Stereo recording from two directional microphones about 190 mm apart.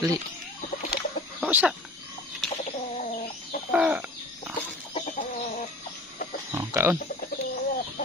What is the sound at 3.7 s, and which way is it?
Bird, 5° right (ahead or behind).